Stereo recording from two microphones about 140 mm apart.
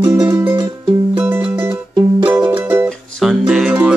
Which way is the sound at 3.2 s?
5° right (ahead or behind).